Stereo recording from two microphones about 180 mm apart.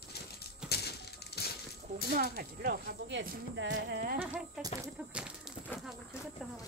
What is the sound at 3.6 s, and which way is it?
Speech, 80° right.